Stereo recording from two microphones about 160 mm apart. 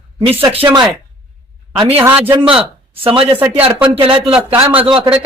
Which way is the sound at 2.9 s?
35° right (ahead or behind).